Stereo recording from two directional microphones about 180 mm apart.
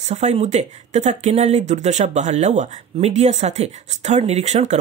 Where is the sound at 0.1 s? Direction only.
40° right (ahead or behind).